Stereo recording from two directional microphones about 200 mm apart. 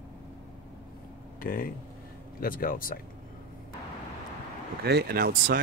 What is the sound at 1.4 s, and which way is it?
Speech, 45° left (ahead or behind).